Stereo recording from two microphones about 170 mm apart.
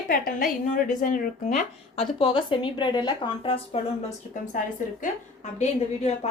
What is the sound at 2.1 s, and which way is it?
Speech, 30° left (ahead or behind).